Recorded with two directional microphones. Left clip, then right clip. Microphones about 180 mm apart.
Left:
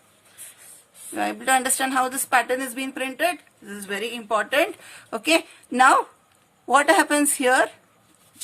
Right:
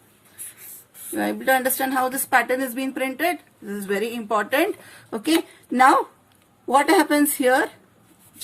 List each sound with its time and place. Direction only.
1.1 s speech: 30° left (ahead or behind)